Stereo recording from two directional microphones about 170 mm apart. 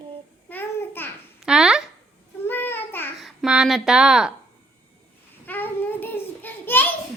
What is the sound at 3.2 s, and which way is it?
Speech, 5° right (ahead or behind).